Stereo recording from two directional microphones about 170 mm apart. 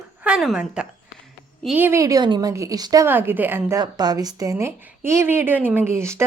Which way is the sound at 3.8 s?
25° right (ahead or behind).